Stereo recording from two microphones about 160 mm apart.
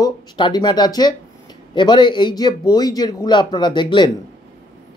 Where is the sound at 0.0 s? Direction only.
25° left (ahead or behind).